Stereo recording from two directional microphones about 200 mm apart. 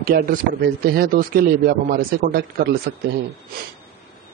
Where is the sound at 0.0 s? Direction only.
45° right (ahead or behind).